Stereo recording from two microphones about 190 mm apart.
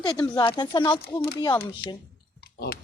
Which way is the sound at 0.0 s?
25° left (ahead or behind).